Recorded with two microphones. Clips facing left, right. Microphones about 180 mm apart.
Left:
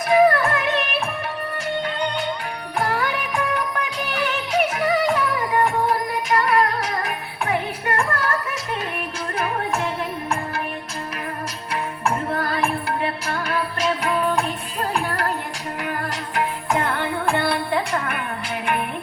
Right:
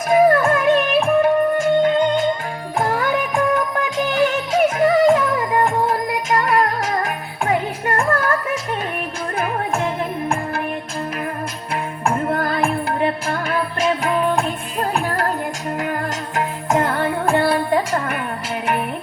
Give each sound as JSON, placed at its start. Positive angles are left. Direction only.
{"t": 0.3, "sound": "music", "side_deg": -45}
{"t": 11.7, "sound": "music", "side_deg": -50}